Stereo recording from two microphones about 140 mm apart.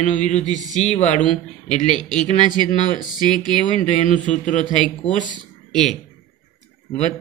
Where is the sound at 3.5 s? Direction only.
35° right (ahead or behind).